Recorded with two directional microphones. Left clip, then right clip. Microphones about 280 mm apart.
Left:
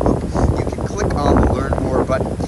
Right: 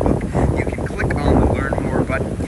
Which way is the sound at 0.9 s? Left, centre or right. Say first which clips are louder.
Left 2 dB; centre.